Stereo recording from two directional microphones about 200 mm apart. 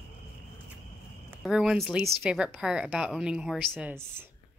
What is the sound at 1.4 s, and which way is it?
Speech, centre (ahead or behind).